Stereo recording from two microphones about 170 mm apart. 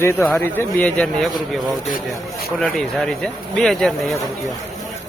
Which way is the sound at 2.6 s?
5° left (ahead or behind).